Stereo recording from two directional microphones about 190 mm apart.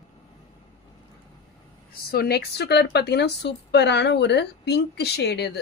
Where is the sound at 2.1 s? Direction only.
55° left (ahead or behind).